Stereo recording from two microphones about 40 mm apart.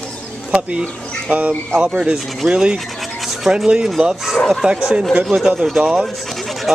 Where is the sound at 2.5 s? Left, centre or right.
Right.